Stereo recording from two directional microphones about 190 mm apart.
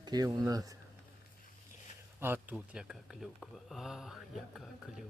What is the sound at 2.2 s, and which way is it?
Speech, 10° right (ahead or behind).